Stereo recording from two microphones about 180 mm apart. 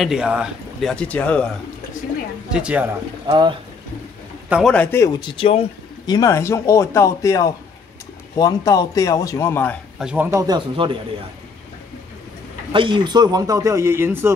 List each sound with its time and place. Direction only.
0.0 s speech: 5° right (ahead or behind)
2.5 s speech: 5° right (ahead or behind)
3.3 s speech: 25° right (ahead or behind)
4.5 s a man's voice: 5° right (ahead or behind)
4.7 s a man's voice: 15° left (ahead or behind); by 5.7 s 30° left (ahead or behind)
6.0 s a man's voice: 20° left (ahead or behind)
9.9 s speech: 5° right (ahead or behind); by 11.0 s 25° right (ahead or behind)
12.7 s speech: 25° right (ahead or behind)